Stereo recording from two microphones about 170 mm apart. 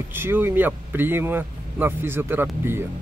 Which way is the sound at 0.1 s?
15° right (ahead or behind).